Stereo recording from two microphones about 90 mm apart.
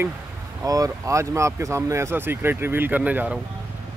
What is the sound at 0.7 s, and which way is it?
Speech, 40° right (ahead or behind).